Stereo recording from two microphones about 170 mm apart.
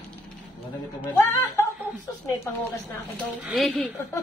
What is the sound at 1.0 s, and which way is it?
Speech, 15° left (ahead or behind).